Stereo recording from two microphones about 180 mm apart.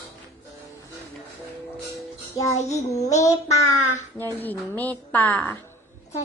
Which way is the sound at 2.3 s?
15° left (ahead or behind).